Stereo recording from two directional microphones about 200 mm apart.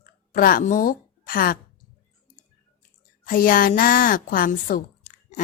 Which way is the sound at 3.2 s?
45° left (ahead or behind).